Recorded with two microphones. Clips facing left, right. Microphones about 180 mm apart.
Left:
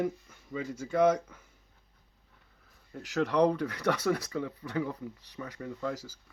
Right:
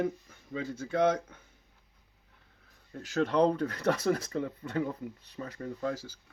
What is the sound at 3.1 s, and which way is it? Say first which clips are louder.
Speech: even; 30° right (ahead or behind).